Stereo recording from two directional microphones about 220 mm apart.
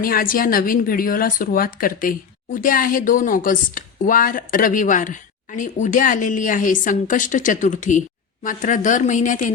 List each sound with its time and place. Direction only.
0.0 s speech: 40° left (ahead or behind)